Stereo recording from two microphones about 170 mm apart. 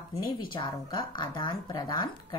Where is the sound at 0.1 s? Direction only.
30° left (ahead or behind).